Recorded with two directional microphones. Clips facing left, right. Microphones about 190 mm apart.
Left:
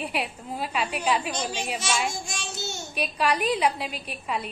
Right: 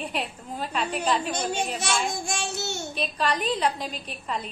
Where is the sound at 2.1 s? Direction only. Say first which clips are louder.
Right 5 dB; 60° right (ahead or behind).